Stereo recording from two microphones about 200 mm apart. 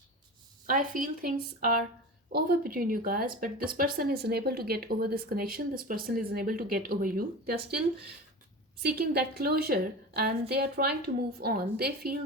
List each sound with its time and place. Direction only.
0.7 s speech: 45° right (ahead or behind)
8.8 s speech: 50° right (ahead or behind)